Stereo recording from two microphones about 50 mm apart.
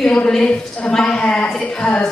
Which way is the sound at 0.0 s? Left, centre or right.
Centre.